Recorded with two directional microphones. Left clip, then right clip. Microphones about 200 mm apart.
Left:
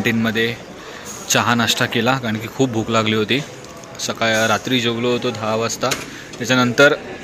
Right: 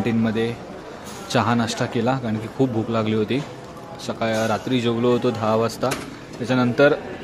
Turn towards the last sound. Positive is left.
turn(degrees=0)  # may be behind; listen again after turning